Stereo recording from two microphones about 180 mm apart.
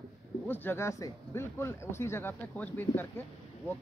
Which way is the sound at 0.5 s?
15° left (ahead or behind).